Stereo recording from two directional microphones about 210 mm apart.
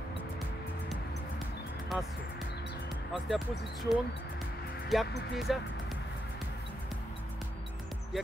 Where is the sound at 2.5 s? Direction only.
55° left (ahead or behind).